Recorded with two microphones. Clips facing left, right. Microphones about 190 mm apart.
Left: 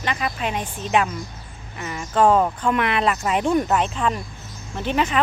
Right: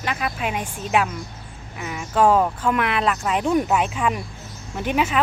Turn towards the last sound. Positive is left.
turn(degrees=-5)  # may be behind; listen again after turning